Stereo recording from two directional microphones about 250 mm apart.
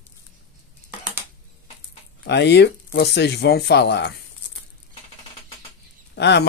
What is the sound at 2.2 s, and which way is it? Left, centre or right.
Speech, left.